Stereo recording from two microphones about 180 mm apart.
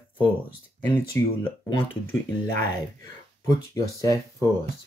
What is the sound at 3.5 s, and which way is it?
Speech, 20° left (ahead or behind).